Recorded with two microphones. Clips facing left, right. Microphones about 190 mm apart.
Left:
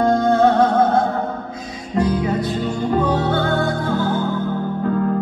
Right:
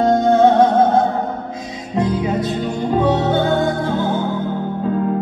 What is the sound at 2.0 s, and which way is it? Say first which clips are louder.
Music: even; 20° right (ahead or behind).